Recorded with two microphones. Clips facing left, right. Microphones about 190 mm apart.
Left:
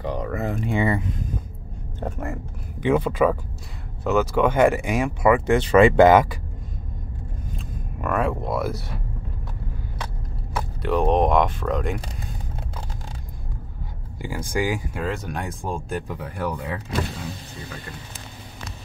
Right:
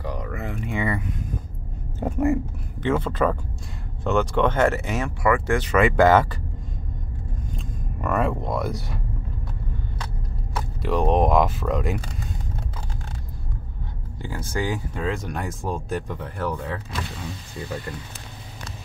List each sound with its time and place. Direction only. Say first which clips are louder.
0.0 s a sound: left 5 dB; 30° left (ahead or behind)
2.0 s a sound: right 9 dB; 5° right (ahead or behind)
2.8 s speech: left 3 dB; 15° left (ahead or behind)
6.0 s speech: left 2 dB; 15° left (ahead or behind)
7.5 s speech: right 1 dB; centre (ahead or behind)
10.8 s speech: left 1 dB; centre (ahead or behind)
14.2 s speech: left 2 dB; 10° left (ahead or behind)
16.2 s speech: even; 15° left (ahead or behind)